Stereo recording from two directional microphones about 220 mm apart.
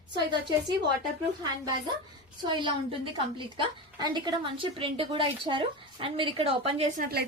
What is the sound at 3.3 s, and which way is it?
A woman's voice, 20° right (ahead or behind).